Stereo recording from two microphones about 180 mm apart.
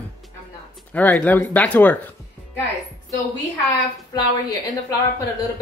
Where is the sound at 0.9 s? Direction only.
10° left (ahead or behind).